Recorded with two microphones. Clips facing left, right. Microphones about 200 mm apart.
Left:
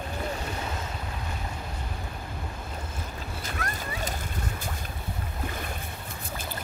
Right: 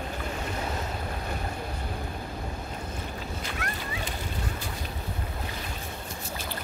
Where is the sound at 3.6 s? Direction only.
40° left (ahead or behind).